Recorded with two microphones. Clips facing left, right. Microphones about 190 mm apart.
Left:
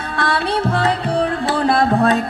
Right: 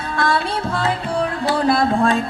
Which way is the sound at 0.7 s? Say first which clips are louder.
Left 3 dB; 35° left (ahead or behind).